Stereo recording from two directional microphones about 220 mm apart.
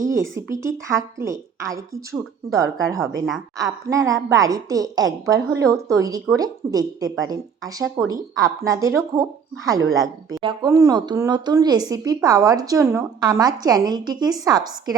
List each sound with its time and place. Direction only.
0.0 s a woman's voice: 15° right (ahead or behind)